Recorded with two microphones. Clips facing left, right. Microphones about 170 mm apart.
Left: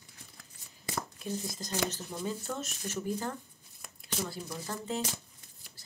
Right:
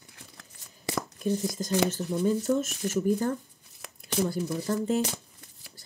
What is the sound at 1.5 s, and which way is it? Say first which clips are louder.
Speech: right 8 dB; 45° right (ahead or behind).